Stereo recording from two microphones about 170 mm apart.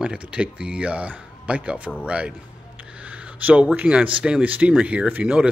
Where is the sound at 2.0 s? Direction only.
5° right (ahead or behind).